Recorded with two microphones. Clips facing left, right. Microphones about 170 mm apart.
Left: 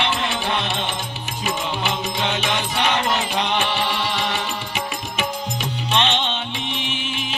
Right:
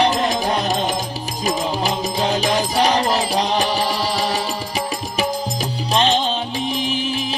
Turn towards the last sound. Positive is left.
turn(degrees=-35)  # may be behind; listen again after turning